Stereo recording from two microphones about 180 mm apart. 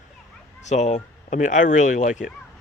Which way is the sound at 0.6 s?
40° left (ahead or behind).